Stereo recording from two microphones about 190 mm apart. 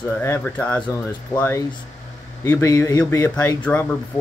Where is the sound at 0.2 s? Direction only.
10° left (ahead or behind).